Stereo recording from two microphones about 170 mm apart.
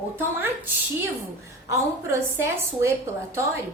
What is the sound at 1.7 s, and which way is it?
A woman's voice, 15° right (ahead or behind).